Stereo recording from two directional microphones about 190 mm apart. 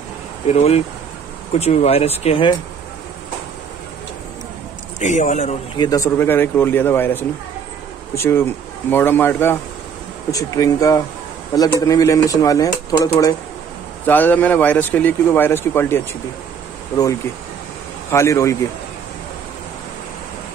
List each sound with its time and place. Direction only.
0.5 s speech: 35° left (ahead or behind)
4.9 s speech: 40° left (ahead or behind)
5.8 s a man's voice: 20° left (ahead or behind)
18.1 s a man's voice: 15° left (ahead or behind)